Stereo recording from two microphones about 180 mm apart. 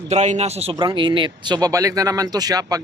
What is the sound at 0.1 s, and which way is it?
Speech, 40° right (ahead or behind).